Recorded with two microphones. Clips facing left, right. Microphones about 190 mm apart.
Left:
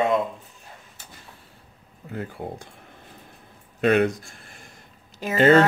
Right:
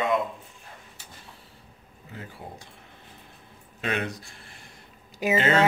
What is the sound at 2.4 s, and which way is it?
Speech, 60° left (ahead or behind).